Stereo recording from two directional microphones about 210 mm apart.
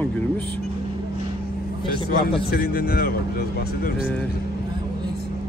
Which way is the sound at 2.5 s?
45° left (ahead or behind).